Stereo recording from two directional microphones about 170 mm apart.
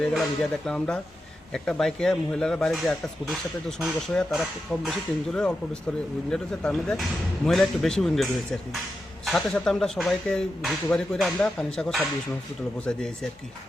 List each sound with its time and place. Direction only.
0.0 s speech: centre (ahead or behind)